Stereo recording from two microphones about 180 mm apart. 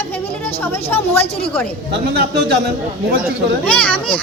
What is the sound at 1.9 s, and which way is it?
Speech, 60° right (ahead or behind).